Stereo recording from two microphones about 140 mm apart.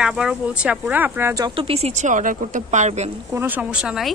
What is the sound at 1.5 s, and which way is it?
Speech, 40° right (ahead or behind).